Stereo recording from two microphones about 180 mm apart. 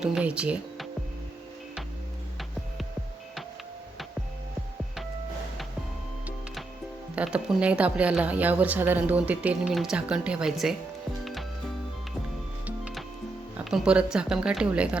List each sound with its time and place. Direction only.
0.0 s speech: 5° right (ahead or behind)
6.2 s music: centre (ahead or behind)
7.2 s speech: 5° right (ahead or behind)
12.6 s music: 5° right (ahead or behind)
13.7 s a woman's voice: 5° right (ahead or behind)